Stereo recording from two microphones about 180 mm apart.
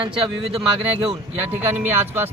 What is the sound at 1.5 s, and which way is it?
Speech, 10° right (ahead or behind).